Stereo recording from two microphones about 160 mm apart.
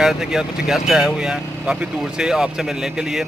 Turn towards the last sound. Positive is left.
turn(degrees=-5)  # may be behind; listen again after turning